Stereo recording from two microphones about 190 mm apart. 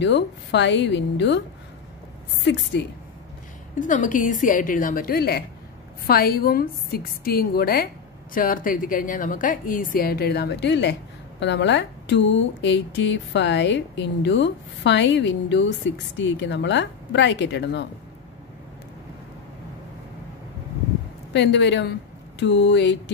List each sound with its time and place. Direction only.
0.0 s speech: 65° left (ahead or behind)
3.8 s a woman's voice: 45° left (ahead or behind); by 17.8 s 65° left (ahead or behind)
21.3 s a woman's voice: 65° left (ahead or behind)